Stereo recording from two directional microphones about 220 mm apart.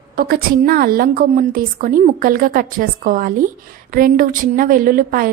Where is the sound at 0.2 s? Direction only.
40° right (ahead or behind).